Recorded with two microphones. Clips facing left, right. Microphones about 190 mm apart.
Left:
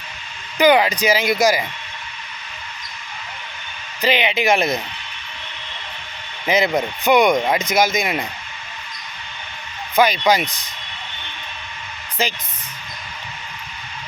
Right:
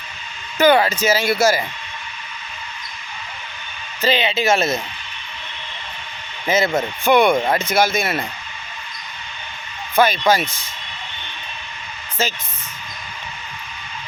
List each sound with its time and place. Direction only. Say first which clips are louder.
0.6 s speech: even; 15° left (ahead or behind)
4.0 s speech: even; 15° left (ahead or behind)
6.7 s speech: right 1 dB; 15° left (ahead or behind)
9.9 s speech: even; 15° left (ahead or behind)
12.2 s speech: even; 15° left (ahead or behind)